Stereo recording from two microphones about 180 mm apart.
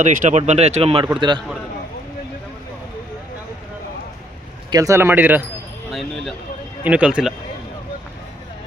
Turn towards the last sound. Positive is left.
turn(degrees=-5)  # may be behind; listen again after turning